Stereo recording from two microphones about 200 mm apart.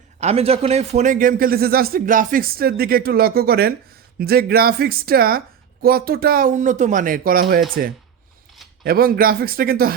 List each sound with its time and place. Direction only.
0.2 s a man's voice: 30° right (ahead or behind)
8.8 s a man's voice: 50° right (ahead or behind)